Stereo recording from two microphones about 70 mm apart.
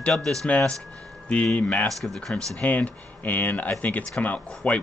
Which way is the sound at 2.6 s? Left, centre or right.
Left.